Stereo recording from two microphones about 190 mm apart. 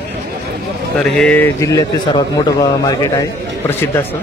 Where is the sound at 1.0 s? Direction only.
5° left (ahead or behind).